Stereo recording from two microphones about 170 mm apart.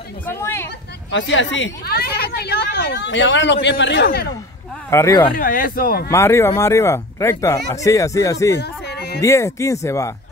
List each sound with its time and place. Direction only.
0.3 s speech: 15° left (ahead or behind)
1.1 s speech: 90° left
4.9 s speech: 15° left (ahead or behind)
5.3 s speech: 55° left (ahead or behind)
6.0 s speech: 15° left (ahead or behind)
8.5 s a sound: 75° left (ahead or behind)
9.2 s speech: 15° left (ahead or behind)